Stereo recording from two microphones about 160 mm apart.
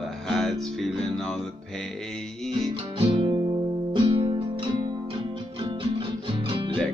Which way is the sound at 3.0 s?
35° right (ahead or behind).